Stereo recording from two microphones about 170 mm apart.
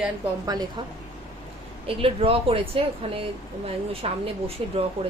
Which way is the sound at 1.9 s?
30° right (ahead or behind).